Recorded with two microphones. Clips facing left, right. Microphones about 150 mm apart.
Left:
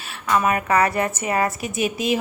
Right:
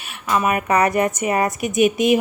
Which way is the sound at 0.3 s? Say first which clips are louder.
Right 1 dB; 15° right (ahead or behind).